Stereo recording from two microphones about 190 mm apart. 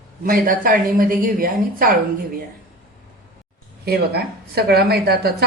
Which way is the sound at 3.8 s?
55° right (ahead or behind).